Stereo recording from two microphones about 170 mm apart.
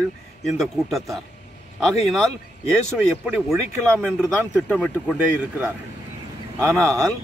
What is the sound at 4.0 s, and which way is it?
Speech, 15° right (ahead or behind).